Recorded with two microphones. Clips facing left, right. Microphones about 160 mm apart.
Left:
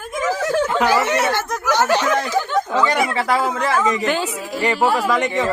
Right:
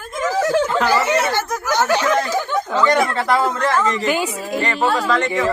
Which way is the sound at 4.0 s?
10° right (ahead or behind).